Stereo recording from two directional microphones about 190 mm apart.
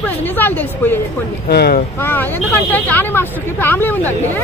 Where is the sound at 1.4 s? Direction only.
55° left (ahead or behind).